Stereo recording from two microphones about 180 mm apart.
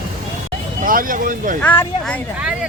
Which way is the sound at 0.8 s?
50° right (ahead or behind).